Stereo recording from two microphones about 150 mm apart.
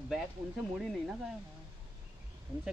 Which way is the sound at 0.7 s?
Centre (ahead or behind).